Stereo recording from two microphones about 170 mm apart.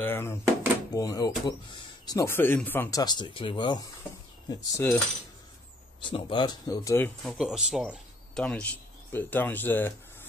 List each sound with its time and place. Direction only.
0.0 s speech: 15° left (ahead or behind)
2.1 s speech: 15° left (ahead or behind)
6.0 s speech: 30° left (ahead or behind)
7.2 s speech: 5° right (ahead or behind)